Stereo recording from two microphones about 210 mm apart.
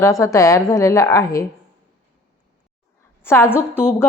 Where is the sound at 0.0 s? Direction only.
15° left (ahead or behind).